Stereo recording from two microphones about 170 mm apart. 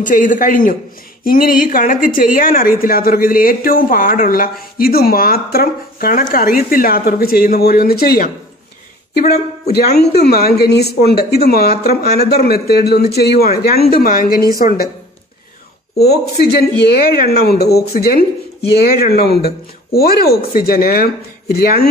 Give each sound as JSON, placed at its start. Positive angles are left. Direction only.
{"t": 0.0, "sound": "a man's voice", "side_deg": 50}
{"t": 9.3, "sound": "a man's voice", "side_deg": 70}
{"t": 16.0, "sound": "speech", "side_deg": 70}